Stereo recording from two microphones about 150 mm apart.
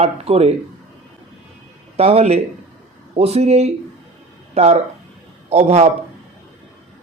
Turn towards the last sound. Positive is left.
turn(degrees=-45)  # may be behind; listen again after turning